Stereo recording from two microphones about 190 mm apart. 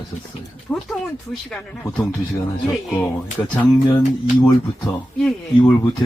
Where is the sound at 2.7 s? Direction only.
5° left (ahead or behind).